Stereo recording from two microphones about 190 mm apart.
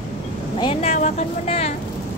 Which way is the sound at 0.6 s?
30° left (ahead or behind).